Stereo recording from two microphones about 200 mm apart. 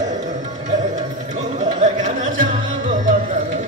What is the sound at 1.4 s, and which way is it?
Music, 35° right (ahead or behind).